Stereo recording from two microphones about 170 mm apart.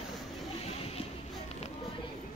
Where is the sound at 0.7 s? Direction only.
35° left (ahead or behind).